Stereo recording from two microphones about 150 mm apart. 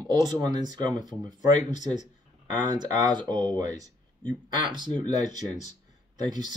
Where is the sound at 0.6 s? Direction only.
30° right (ahead or behind).